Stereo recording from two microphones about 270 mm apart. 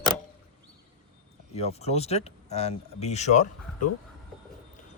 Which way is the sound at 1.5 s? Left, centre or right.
Left.